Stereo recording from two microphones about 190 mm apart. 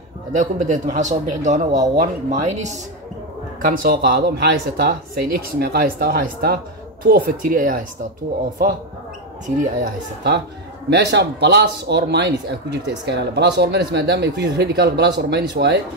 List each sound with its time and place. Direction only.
0.3 s a man's voice: 40° right (ahead or behind)
3.6 s speech: 50° right (ahead or behind)
9.8 s speech: 60° right (ahead or behind)